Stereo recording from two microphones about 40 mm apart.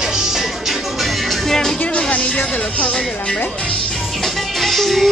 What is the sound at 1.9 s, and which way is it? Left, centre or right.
Music, left.